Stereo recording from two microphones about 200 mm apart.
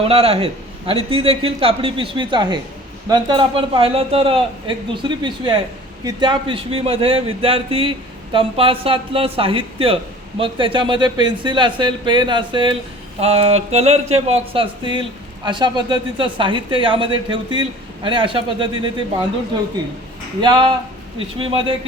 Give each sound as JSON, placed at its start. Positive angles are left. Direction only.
{"t": 0.0, "sound": "speech", "side_deg": -30}
{"t": 20.4, "sound": "speech", "side_deg": -20}